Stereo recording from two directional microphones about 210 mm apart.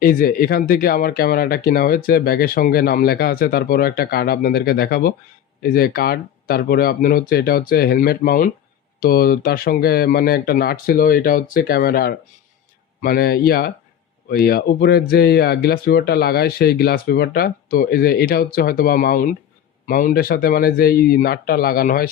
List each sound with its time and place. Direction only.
0.0 s speech: 40° left (ahead or behind)